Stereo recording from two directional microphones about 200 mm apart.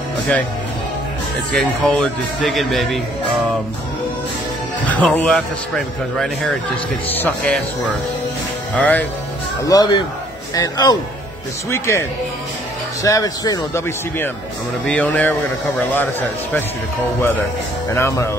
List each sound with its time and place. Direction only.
1.5 s speech: 5° left (ahead or behind)
4.8 s speech: 5° left (ahead or behind)
8.7 s speech: 5° left (ahead or behind)
9.7 s speech: 20° left (ahead or behind)
17.9 s speech: 15° left (ahead or behind)